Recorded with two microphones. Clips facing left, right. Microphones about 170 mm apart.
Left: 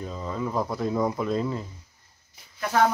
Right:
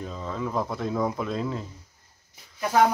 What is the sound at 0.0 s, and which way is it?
Speech, 5° left (ahead or behind).